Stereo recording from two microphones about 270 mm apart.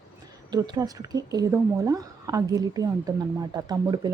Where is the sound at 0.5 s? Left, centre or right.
Centre.